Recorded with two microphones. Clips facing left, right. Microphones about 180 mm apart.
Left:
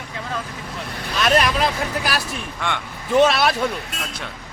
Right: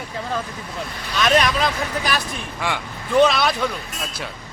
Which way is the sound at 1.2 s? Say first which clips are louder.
Even; 5° left (ahead or behind).